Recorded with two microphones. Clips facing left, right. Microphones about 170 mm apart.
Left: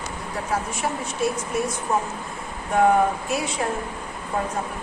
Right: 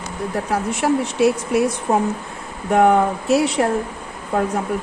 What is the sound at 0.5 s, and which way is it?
Speech, 70° right (ahead or behind).